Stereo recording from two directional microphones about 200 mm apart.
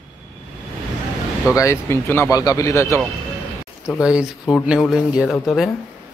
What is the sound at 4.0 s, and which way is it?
A man's voice, 5° right (ahead or behind).